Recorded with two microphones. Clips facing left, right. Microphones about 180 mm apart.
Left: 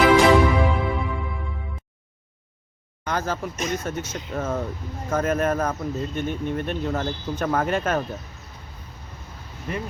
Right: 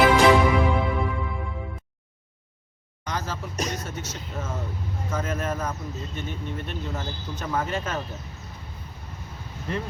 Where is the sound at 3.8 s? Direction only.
55° left (ahead or behind).